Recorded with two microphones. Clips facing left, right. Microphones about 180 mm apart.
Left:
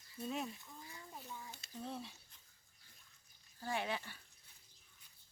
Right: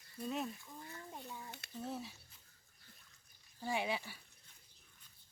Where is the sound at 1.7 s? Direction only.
5° right (ahead or behind).